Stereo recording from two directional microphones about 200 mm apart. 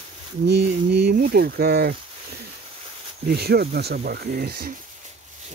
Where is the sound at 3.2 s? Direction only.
55° right (ahead or behind).